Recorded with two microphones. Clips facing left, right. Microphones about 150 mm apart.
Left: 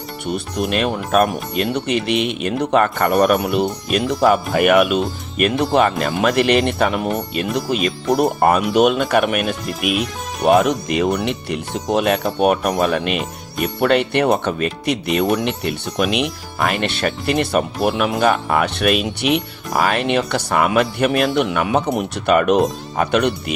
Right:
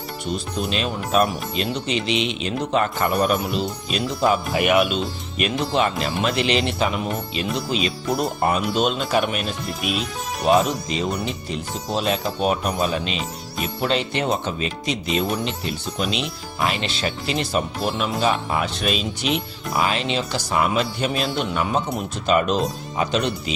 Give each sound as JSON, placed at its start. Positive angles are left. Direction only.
{"t": 0.3, "sound": "speech", "side_deg": 60}